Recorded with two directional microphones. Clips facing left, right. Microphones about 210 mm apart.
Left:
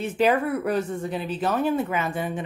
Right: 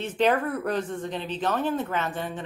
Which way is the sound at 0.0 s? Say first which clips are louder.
Left 2 dB; 10° left (ahead or behind).